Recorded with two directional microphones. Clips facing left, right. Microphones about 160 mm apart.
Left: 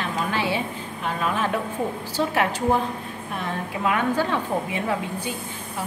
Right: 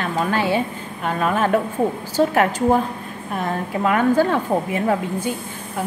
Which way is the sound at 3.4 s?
45° right (ahead or behind).